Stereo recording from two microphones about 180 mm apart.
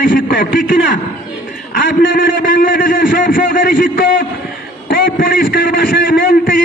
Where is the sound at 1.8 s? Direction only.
50° left (ahead or behind).